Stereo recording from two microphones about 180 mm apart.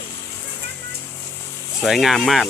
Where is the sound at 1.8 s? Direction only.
Centre (ahead or behind).